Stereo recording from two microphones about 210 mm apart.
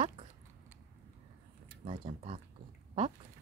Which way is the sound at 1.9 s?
30° right (ahead or behind).